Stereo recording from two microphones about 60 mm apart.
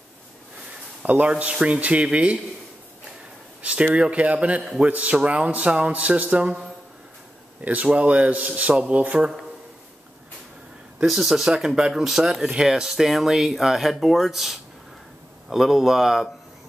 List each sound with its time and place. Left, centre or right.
1.0 s a man's voice: right
3.6 s a man's voice: centre
7.6 s a man's voice: right
11.1 s speech: centre